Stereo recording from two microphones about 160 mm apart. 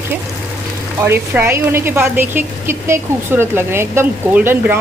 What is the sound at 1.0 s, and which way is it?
Speech, 15° right (ahead or behind).